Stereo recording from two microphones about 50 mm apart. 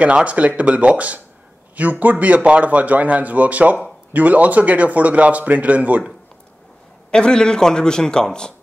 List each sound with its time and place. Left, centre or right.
0.0 s a man's voice: right
7.1 s a man's voice: centre